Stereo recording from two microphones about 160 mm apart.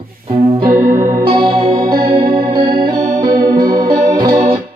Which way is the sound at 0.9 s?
40° right (ahead or behind).